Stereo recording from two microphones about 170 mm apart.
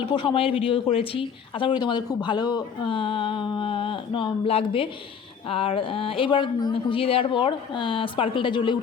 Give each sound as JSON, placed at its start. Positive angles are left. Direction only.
{"t": 0.0, "sound": "speech", "side_deg": 30}